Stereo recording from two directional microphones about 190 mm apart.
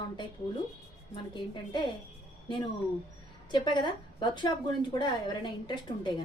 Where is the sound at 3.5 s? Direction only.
25° left (ahead or behind).